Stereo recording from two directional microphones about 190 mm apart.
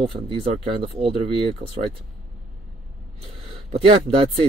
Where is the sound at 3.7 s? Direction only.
30° right (ahead or behind).